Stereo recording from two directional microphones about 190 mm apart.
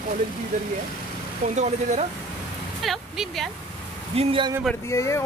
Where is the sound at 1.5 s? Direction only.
35° right (ahead or behind).